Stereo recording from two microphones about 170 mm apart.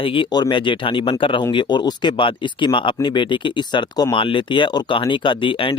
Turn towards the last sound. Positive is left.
turn(degrees=30)  # may be behind; listen again after turning